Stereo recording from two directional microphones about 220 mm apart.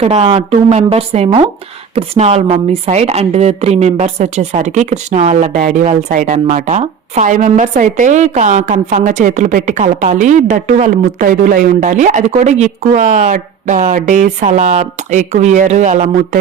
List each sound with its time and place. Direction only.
0.0 s a woman's voice: 25° right (ahead or behind)